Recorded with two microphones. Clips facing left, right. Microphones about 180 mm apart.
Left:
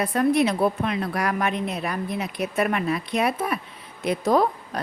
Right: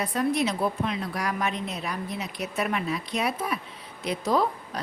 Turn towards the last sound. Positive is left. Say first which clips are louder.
# left 4 dB
turn(degrees=50)  # may be behind; listen again after turning